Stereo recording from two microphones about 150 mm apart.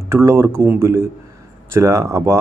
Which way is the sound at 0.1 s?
15° right (ahead or behind).